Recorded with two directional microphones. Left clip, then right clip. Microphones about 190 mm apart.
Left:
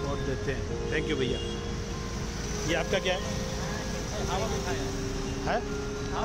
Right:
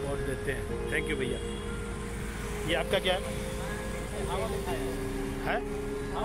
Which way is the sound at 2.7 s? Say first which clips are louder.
Even; centre (ahead or behind).